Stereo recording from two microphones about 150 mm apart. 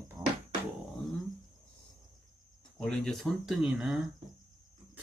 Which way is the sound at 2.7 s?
5° left (ahead or behind).